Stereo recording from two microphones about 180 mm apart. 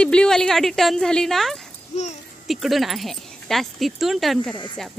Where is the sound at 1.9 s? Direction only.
40° left (ahead or behind).